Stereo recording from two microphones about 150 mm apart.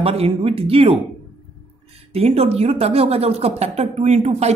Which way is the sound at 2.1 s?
40° right (ahead or behind).